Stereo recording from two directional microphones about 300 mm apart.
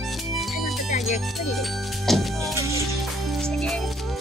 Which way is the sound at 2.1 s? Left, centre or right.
Centre.